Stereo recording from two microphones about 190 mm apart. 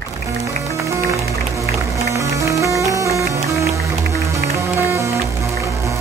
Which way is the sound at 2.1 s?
15° right (ahead or behind).